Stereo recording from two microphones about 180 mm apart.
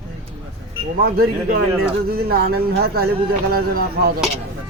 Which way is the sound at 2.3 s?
60° right (ahead or behind).